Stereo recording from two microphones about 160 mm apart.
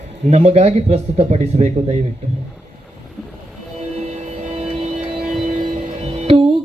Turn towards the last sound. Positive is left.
turn(degrees=-45)  # may be behind; listen again after turning